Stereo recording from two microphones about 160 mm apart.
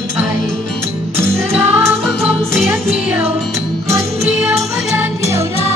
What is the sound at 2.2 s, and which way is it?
Music, 10° right (ahead or behind).